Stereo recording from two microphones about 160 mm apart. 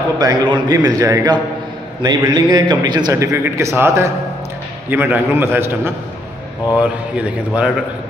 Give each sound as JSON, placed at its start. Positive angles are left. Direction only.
{"t": 0.2, "sound": "a man's voice", "side_deg": -25}